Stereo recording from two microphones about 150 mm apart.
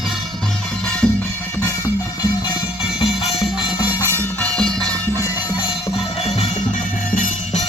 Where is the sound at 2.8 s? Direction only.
40° left (ahead or behind).